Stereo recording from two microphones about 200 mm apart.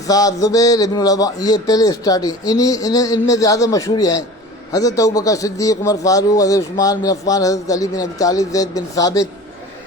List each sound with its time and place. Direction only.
0.1 s a man's voice: 20° left (ahead or behind)